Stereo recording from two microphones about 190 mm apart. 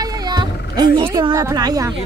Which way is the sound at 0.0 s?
20° right (ahead or behind).